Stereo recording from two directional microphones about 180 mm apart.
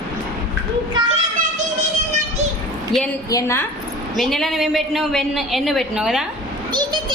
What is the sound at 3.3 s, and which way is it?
Speech, 15° left (ahead or behind).